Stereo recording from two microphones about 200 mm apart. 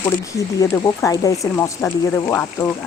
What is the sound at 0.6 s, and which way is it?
Speech, 15° left (ahead or behind).